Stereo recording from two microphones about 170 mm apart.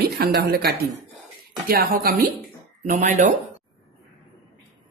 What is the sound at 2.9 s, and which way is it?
Speech, 45° right (ahead or behind).